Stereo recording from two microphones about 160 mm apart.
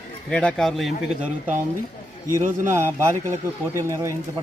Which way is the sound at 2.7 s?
15° right (ahead or behind).